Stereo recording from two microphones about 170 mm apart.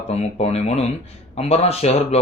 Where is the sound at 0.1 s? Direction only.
40° left (ahead or behind).